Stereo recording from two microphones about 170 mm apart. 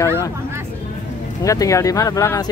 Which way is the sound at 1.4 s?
20° left (ahead or behind).